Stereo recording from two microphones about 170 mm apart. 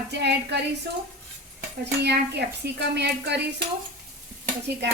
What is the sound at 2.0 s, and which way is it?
Speech, 75° right (ahead or behind).